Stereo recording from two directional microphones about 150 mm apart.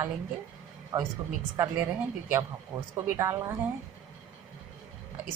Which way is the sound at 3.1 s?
20° right (ahead or behind).